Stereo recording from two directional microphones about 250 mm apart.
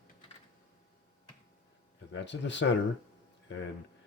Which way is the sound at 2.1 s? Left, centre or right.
Left.